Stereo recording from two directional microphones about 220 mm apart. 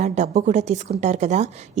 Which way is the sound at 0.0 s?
30° right (ahead or behind).